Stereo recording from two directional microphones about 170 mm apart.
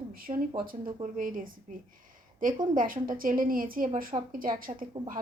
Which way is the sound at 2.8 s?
55° right (ahead or behind).